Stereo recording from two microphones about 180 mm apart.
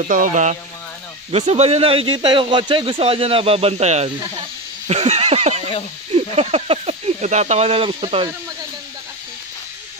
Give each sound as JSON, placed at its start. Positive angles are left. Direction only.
{"t": 0.1, "sound": "speech", "side_deg": -45}
{"t": 4.8, "sound": "a sound", "side_deg": -35}
{"t": 6.1, "sound": "speech", "side_deg": -35}